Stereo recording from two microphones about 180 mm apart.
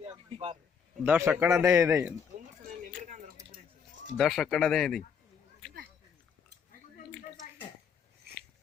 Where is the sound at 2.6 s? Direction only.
45° right (ahead or behind).